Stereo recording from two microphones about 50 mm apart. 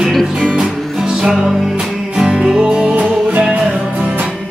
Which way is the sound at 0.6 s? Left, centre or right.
Centre.